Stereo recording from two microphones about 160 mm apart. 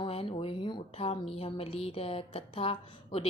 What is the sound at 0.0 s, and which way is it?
A woman's voice, 35° left (ahead or behind).